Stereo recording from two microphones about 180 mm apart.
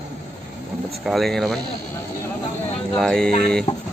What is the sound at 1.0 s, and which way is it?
Speech, centre (ahead or behind).